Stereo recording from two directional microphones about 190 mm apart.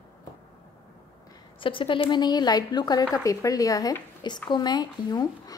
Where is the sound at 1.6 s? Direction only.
25° left (ahead or behind).